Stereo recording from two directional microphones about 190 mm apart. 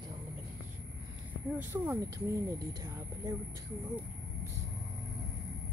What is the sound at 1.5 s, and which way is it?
Speech, 10° right (ahead or behind).